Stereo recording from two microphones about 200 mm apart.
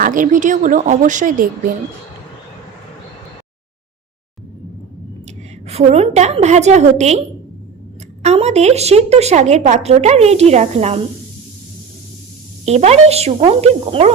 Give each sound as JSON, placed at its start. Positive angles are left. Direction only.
{"t": 0.0, "sound": "speech", "side_deg": -40}
{"t": 5.6, "sound": "speech", "side_deg": -30}
{"t": 8.2, "sound": "speech", "side_deg": -35}
{"t": 12.6, "sound": "speech", "side_deg": -30}